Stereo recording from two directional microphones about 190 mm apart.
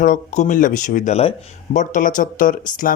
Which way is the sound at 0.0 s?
45° left (ahead or behind).